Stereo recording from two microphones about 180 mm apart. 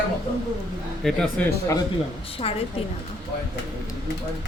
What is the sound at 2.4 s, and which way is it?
Speech, 35° left (ahead or behind).